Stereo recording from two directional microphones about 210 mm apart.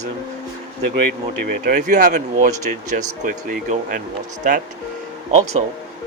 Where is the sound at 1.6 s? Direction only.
45° right (ahead or behind).